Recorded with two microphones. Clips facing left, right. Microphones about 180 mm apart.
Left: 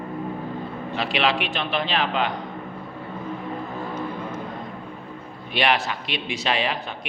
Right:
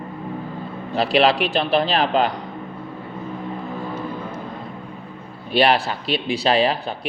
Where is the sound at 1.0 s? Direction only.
35° right (ahead or behind).